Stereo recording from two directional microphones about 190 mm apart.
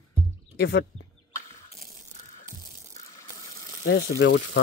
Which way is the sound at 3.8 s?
65° left (ahead or behind).